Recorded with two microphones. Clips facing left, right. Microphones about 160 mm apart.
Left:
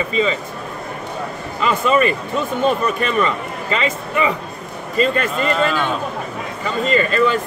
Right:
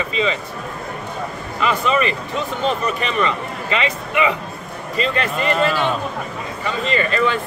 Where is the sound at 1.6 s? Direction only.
45° left (ahead or behind).